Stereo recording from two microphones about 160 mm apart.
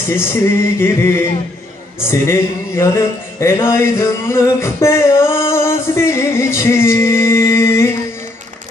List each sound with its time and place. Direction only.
0.1 s speech: 15° left (ahead or behind)